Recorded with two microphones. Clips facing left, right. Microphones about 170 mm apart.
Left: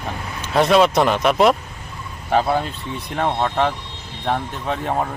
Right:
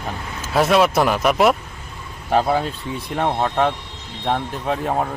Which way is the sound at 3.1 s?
5° right (ahead or behind).